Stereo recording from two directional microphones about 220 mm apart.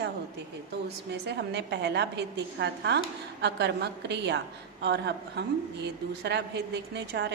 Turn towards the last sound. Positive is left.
turn(degrees=-50)  # may be behind; listen again after turning